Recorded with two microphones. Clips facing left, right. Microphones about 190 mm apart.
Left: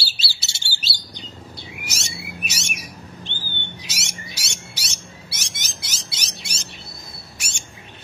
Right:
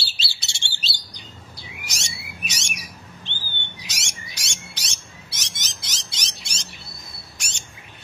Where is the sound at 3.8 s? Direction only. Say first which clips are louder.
Left 3 dB; 5° left (ahead or behind).